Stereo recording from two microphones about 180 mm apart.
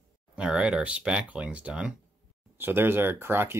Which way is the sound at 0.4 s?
5° right (ahead or behind).